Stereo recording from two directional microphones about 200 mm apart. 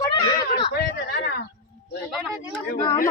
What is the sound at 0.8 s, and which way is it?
Speech, 55° left (ahead or behind).